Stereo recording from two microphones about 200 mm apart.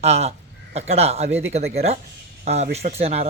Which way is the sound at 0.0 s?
30° right (ahead or behind).